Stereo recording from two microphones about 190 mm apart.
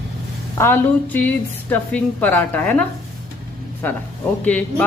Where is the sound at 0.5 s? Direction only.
15° left (ahead or behind).